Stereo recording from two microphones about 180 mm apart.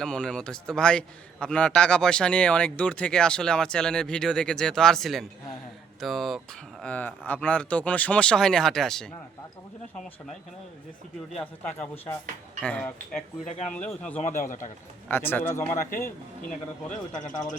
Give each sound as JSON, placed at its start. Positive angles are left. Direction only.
{"t": 0.0, "sound": "a man's voice", "side_deg": 5}
{"t": 11.3, "sound": "a man's voice", "side_deg": 5}
{"t": 16.0, "sound": "speech", "side_deg": 45}